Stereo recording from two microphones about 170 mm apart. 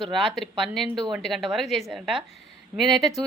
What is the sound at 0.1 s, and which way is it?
A woman's voice, centre (ahead or behind).